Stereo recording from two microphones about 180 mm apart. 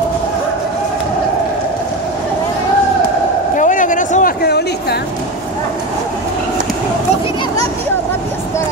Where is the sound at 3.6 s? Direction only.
45° left (ahead or behind); by 5.0 s 60° left (ahead or behind).